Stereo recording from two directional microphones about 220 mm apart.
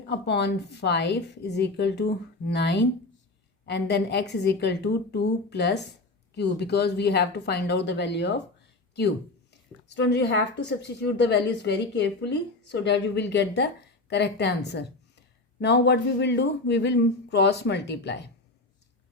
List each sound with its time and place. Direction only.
0.1 s a woman's voice: 50° left (ahead or behind)